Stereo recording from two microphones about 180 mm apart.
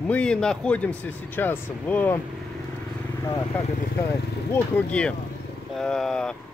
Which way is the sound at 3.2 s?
15° left (ahead or behind).